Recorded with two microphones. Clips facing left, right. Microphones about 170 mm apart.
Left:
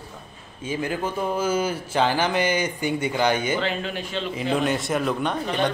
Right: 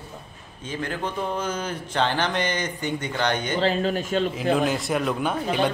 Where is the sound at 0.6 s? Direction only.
10° left (ahead or behind).